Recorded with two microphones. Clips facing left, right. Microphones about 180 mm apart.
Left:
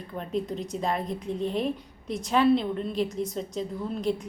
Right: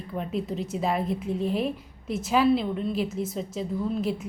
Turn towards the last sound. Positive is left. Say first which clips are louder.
# right 1 dB
turn(degrees=-5)  # may be behind; listen again after turning